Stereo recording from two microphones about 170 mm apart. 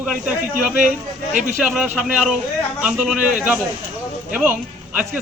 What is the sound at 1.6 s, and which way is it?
A man's voice, 5° right (ahead or behind).